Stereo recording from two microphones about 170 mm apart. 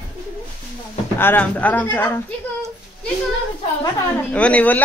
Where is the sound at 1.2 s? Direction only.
10° left (ahead or behind).